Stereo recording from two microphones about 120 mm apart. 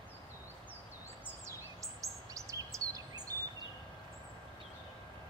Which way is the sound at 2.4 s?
30° right (ahead or behind).